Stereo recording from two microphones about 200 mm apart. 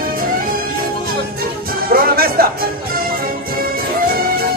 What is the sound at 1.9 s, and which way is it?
Music, 45° right (ahead or behind).